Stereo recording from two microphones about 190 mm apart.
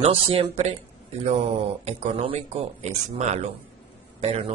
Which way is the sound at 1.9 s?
35° right (ahead or behind).